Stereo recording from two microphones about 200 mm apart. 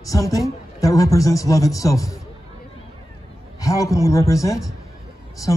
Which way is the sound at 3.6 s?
15° left (ahead or behind).